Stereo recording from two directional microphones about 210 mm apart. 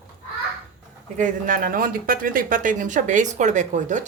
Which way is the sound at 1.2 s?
40° right (ahead or behind).